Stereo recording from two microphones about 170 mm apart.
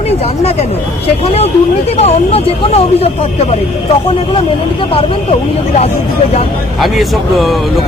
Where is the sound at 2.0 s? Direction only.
35° left (ahead or behind).